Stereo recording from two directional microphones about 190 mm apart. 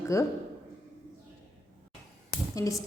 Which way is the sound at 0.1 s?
15° left (ahead or behind).